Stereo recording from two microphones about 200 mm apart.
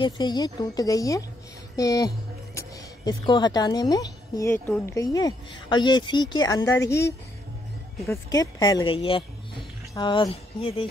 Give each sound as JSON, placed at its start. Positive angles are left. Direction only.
{"t": 0.0, "sound": "speech", "side_deg": 20}
{"t": 3.1, "sound": "speech", "side_deg": 20}
{"t": 8.1, "sound": "speech", "side_deg": 15}